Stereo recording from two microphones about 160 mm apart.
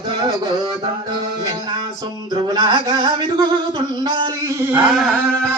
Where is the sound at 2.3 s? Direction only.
30° right (ahead or behind).